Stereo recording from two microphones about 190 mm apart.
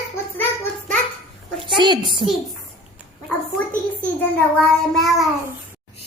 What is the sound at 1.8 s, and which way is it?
Speech, 25° right (ahead or behind).